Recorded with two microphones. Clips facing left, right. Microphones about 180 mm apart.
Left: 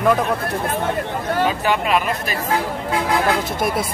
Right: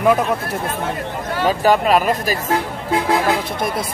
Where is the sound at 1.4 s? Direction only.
40° right (ahead or behind).